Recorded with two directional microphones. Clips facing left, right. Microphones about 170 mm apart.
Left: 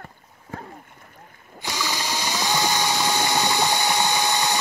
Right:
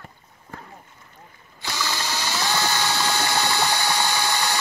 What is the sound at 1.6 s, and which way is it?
Ratchet, 15° left (ahead or behind).